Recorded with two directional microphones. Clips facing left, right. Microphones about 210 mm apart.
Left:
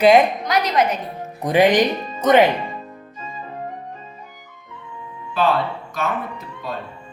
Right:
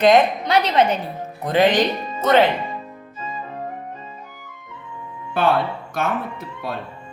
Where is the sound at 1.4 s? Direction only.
15° left (ahead or behind).